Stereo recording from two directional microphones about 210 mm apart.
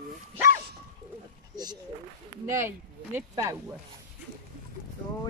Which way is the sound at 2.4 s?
10° right (ahead or behind).